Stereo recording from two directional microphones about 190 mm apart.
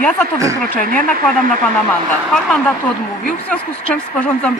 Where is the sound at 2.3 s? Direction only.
5° left (ahead or behind).